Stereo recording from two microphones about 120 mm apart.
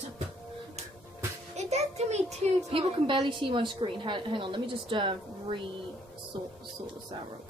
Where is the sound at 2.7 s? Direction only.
50° right (ahead or behind).